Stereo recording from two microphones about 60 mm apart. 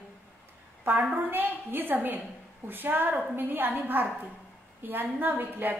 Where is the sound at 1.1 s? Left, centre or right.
Right.